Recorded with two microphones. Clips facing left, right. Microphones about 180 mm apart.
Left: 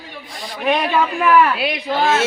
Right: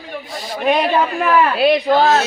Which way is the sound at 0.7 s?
40° right (ahead or behind).